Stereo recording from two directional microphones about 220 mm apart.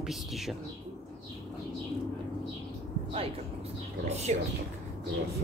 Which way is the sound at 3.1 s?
25° right (ahead or behind).